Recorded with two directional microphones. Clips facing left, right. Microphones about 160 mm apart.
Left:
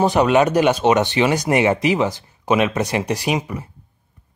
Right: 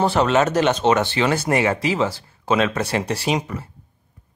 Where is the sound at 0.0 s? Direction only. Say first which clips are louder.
Left 3 dB; 15° left (ahead or behind).